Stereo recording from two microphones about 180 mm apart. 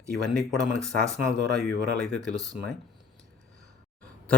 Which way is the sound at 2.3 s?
20° right (ahead or behind).